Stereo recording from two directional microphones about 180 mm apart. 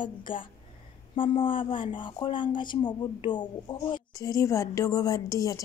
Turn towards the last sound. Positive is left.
turn(degrees=20)  # may be behind; listen again after turning